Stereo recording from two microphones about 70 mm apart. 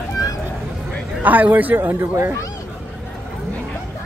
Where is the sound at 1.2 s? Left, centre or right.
Right.